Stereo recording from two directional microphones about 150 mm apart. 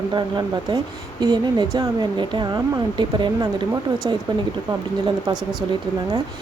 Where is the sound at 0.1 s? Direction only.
30° right (ahead or behind).